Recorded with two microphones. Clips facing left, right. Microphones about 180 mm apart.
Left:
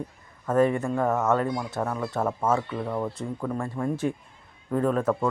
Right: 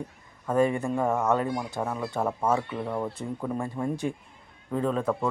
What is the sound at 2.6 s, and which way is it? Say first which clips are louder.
Speech: left 1 dB; 15° right (ahead or behind).